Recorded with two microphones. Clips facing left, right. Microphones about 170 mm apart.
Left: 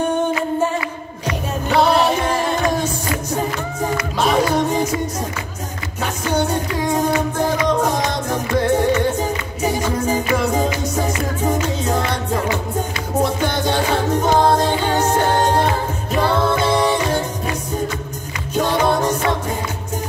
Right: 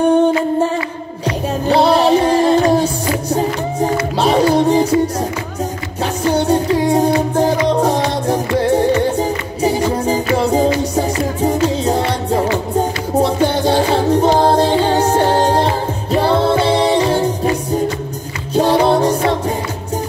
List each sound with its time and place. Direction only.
1.2 s music: 35° right (ahead or behind)
6.2 s music: 35° right (ahead or behind)
18.5 s music: 35° right (ahead or behind)